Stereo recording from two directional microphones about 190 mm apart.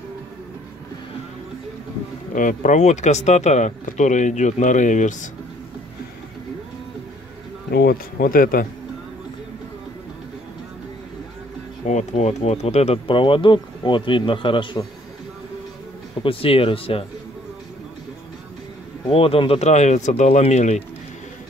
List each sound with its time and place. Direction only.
2.3 s speech: 40° left (ahead or behind)
7.7 s speech: 50° left (ahead or behind)
11.9 s speech: 35° left (ahead or behind)
16.2 s speech: 30° left (ahead or behind)
19.0 s speech: 30° left (ahead or behind)